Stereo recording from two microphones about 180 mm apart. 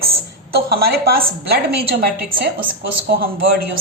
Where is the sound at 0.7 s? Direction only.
60° right (ahead or behind).